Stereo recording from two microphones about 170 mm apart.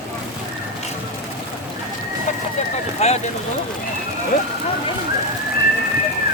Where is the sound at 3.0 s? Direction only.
40° left (ahead or behind).